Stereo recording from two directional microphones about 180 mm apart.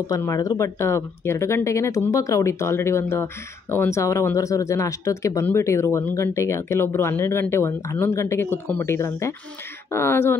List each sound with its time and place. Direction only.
0.0 s speech: 20° left (ahead or behind)